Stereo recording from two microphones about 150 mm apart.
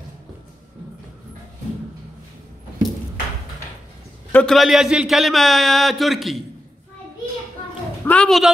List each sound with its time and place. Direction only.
4.3 s a man's voice: 10° left (ahead or behind)
4.6 s a man's voice: 5° right (ahead or behind)
8.0 s a man's voice: 10° left (ahead or behind)